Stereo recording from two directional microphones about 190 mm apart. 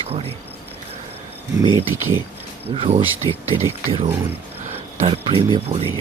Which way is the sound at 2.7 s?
30° right (ahead or behind).